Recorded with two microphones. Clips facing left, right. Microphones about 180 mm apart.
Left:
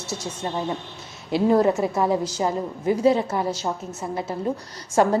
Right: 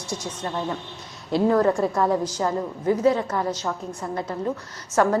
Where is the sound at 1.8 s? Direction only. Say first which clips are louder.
Even; 5° left (ahead or behind).